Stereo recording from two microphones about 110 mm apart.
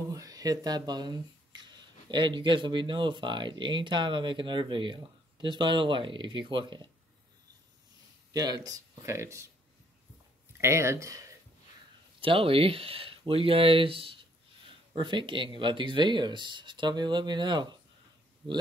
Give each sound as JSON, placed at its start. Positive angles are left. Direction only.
{"t": 0.1, "sound": "speech", "side_deg": -35}
{"t": 8.3, "sound": "speech", "side_deg": -35}
{"t": 10.6, "sound": "speech", "side_deg": -25}
{"t": 12.2, "sound": "speech", "side_deg": -55}